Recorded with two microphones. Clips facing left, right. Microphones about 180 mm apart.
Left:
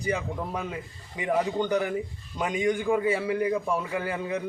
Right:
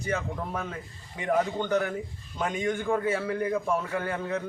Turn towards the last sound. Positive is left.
turn(degrees=15)  # may be behind; listen again after turning